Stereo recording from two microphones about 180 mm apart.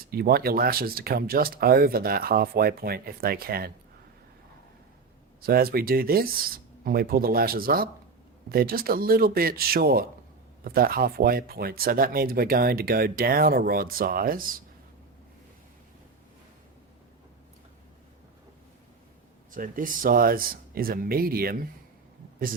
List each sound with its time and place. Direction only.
0.1 s speech: 60° right (ahead or behind)
5.4 s speech: 55° right (ahead or behind)
19.5 s speech: 50° right (ahead or behind)